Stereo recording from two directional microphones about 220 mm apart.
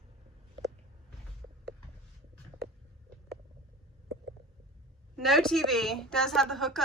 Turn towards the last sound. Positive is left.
turn(degrees=0)  # may be behind; listen again after turning